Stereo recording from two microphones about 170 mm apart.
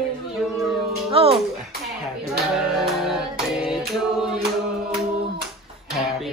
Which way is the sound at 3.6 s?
Centre (ahead or behind).